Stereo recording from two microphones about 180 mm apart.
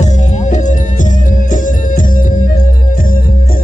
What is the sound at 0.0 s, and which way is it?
Music, 40° left (ahead or behind).